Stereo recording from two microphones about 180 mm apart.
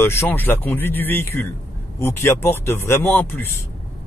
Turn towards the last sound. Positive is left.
turn(degrees=10)  # may be behind; listen again after turning